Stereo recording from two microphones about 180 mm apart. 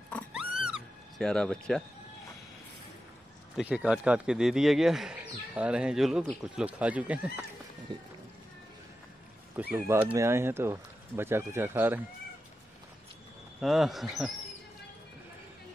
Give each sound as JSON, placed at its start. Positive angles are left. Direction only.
{"t": 0.1, "sound": "music", "side_deg": -5}
{"t": 3.5, "sound": "speech", "side_deg": -5}
{"t": 7.9, "sound": "speech", "side_deg": -25}
{"t": 9.6, "sound": "speech", "side_deg": -10}
{"t": 13.6, "sound": "speech", "side_deg": 0}